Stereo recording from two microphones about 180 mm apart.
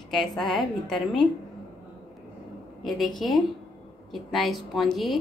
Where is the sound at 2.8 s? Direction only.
Centre (ahead or behind).